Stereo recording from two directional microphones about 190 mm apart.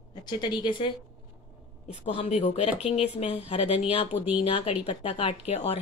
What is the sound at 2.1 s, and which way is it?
Speech, 35° left (ahead or behind).